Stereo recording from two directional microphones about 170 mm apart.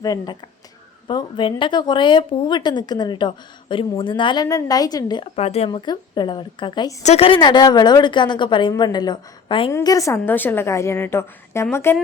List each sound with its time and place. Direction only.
0.0 s speech: 20° left (ahead or behind)
5.4 s speech: 35° left (ahead or behind)
7.0 s speech: 35° left (ahead or behind)
9.7 s a woman's voice: 20° left (ahead or behind)